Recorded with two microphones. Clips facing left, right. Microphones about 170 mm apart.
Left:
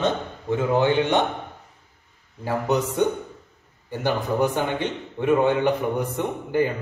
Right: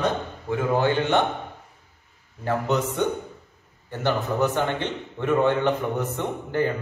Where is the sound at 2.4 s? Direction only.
10° left (ahead or behind).